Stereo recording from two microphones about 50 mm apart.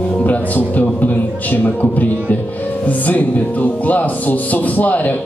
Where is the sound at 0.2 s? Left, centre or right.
Left.